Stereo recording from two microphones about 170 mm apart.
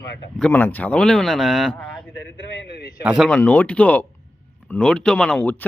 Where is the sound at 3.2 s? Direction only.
10° left (ahead or behind).